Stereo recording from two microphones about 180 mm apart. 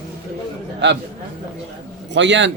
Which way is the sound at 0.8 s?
75° right (ahead or behind).